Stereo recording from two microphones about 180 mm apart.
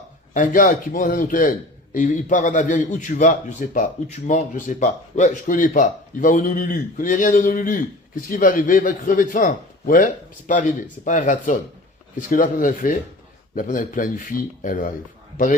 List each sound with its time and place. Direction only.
0.3 s speech: 50° left (ahead or behind)